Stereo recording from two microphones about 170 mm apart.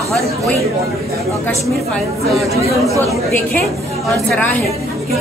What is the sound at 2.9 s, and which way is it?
Speech, 20° right (ahead or behind).